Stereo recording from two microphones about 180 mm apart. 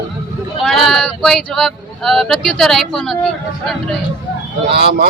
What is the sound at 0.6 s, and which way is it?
A man's voice, centre (ahead or behind).